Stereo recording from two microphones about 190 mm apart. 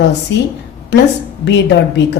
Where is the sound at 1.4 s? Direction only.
65° left (ahead or behind).